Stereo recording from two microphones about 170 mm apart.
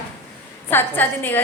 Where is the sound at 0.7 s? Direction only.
10° left (ahead or behind).